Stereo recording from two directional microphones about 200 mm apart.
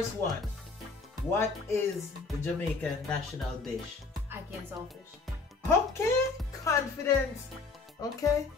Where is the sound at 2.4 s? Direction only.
5° left (ahead or behind).